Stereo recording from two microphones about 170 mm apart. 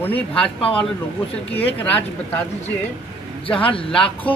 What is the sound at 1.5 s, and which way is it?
Speech, 10° left (ahead or behind).